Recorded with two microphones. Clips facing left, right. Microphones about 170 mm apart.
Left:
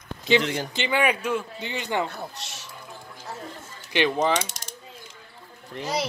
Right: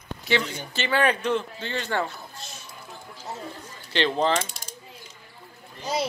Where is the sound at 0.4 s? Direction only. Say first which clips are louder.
Left 5 dB; 85° left.